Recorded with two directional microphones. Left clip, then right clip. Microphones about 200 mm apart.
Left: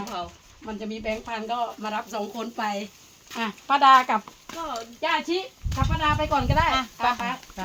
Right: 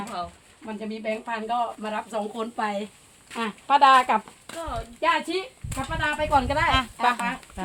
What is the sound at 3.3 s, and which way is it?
Speech, 5° left (ahead or behind).